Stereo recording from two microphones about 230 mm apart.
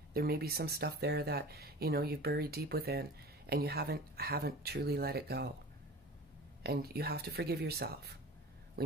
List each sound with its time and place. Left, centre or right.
0.1 s speech: right
6.6 s speech: right